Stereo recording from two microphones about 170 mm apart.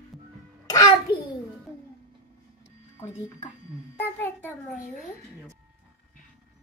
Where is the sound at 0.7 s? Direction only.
20° left (ahead or behind).